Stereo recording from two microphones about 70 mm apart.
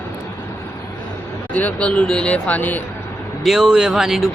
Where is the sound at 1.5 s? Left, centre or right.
Centre.